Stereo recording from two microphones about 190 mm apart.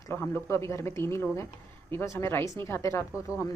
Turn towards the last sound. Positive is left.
turn(degrees=15)  # may be behind; listen again after turning